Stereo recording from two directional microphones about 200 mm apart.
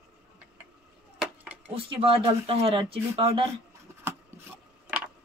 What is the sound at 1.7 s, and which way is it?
Speech, 30° right (ahead or behind).